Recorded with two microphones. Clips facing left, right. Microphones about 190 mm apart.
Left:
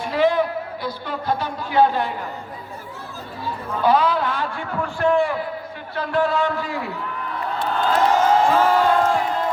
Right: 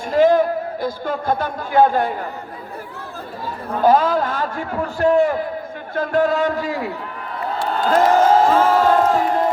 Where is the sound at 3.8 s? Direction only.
45° right (ahead or behind).